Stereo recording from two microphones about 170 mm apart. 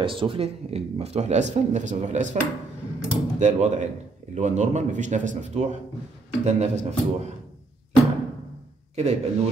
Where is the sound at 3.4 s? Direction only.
45° right (ahead or behind).